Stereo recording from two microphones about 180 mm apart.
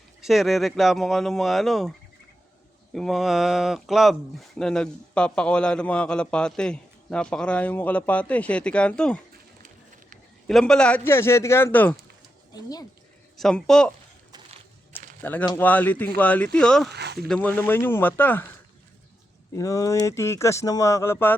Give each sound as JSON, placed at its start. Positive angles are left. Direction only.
{"t": 0.2, "sound": "speech", "side_deg": 0}
{"t": 2.9, "sound": "speech", "side_deg": 0}
{"t": 10.4, "sound": "speech", "side_deg": 5}
{"t": 12.5, "sound": "speech", "side_deg": 20}
{"t": 13.3, "sound": "speech", "side_deg": 0}
{"t": 15.2, "sound": "speech", "side_deg": 10}
{"t": 16.9, "sound": "speech", "side_deg": -65}
{"t": 17.2, "sound": "speech", "side_deg": 5}
{"t": 19.5, "sound": "speech", "side_deg": 20}